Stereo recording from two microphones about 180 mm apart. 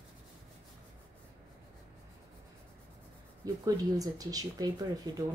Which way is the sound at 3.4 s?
20° right (ahead or behind).